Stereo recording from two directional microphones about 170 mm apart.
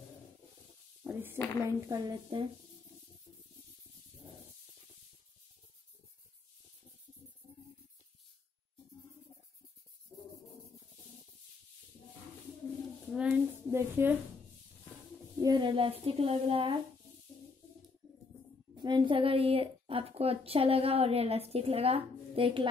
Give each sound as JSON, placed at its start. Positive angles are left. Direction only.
{"t": 1.0, "sound": "speech", "side_deg": -10}
{"t": 1.6, "sound": "a woman's voice", "side_deg": -20}
{"t": 13.1, "sound": "a sound", "side_deg": -10}
{"t": 15.4, "sound": "speech", "side_deg": -25}
{"t": 18.8, "sound": "a woman's voice", "side_deg": -25}